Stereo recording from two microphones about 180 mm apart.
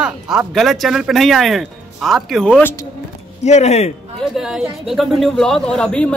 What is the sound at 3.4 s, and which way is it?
Speech, 40° left (ahead or behind).